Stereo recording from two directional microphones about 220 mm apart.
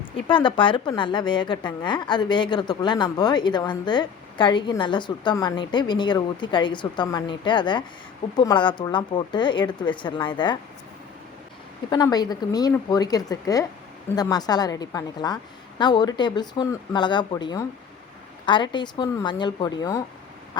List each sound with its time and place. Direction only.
0.3 s a woman's voice: 20° left (ahead or behind)
11.9 s a woman's voice: 20° left (ahead or behind)